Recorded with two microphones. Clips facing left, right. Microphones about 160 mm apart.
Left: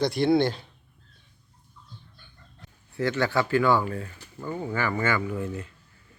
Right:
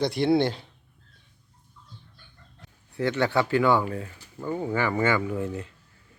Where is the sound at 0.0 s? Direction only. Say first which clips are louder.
Even; 25° right (ahead or behind).